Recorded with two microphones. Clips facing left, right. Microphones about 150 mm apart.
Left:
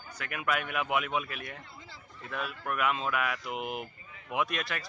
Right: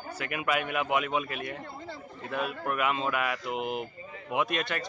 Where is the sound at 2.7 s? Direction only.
Centre (ahead or behind).